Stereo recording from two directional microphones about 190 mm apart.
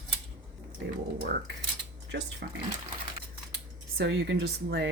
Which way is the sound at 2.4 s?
55° right (ahead or behind).